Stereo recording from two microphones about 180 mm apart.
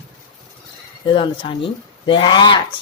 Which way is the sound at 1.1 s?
30° left (ahead or behind).